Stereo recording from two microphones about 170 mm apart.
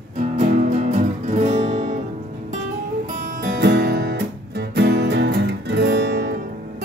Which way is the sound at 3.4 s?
65° right (ahead or behind).